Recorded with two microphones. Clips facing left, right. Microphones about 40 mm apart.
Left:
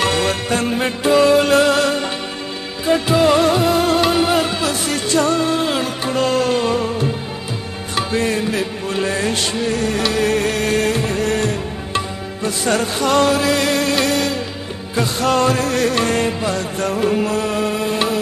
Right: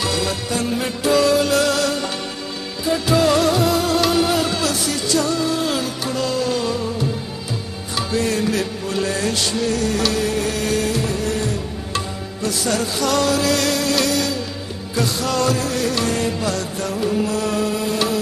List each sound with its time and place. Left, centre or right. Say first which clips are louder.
0.0 s music: left 4 dB; left
3.1 s music: left 1 dB; left
4.8 s music: left 3 dB; left
10.2 s music: left 4 dB; left
12.4 s music: left 3 dB; left
16.3 s music: left 2 dB; left
16.8 s music: left 4 dB; left